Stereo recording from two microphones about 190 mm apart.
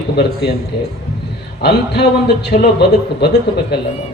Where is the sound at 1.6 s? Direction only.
60° left (ahead or behind).